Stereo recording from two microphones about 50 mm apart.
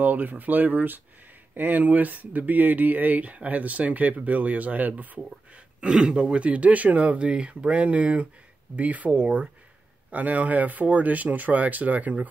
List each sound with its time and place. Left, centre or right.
0.0 s speech: right
5.9 s speech: centre; by 12.3 s right